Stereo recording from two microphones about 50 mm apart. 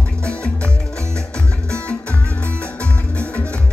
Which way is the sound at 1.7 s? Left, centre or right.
Left.